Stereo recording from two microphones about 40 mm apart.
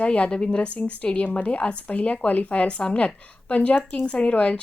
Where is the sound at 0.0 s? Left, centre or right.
Left.